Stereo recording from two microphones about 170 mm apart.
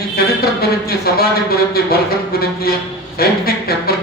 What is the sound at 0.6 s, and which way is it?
A man's voice, 65° left (ahead or behind).